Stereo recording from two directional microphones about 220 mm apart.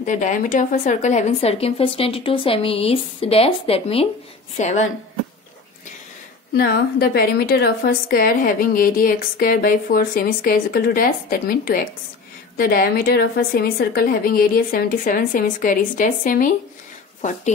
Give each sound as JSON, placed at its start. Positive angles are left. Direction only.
{"t": 0.0, "sound": "a woman's voice", "side_deg": 35}
{"t": 6.5, "sound": "a woman's voice", "side_deg": 45}